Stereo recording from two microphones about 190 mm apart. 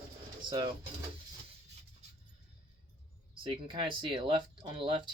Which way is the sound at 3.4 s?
25° right (ahead or behind).